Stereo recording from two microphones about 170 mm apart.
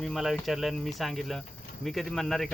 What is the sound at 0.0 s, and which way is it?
Speech, centre (ahead or behind).